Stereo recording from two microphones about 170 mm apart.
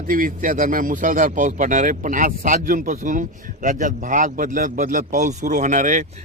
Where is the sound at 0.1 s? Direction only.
55° right (ahead or behind).